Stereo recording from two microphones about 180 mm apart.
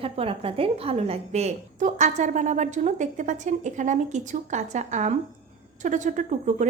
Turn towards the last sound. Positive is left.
turn(degrees=-40)  # may be behind; listen again after turning